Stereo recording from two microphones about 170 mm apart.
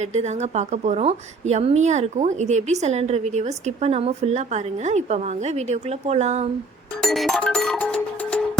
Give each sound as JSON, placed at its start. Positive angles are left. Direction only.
{"t": 0.1, "sound": "a woman's voice", "side_deg": -40}
{"t": 7.0, "sound": "music", "side_deg": 0}